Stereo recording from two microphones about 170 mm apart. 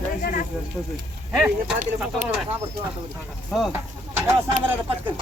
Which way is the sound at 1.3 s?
5° right (ahead or behind).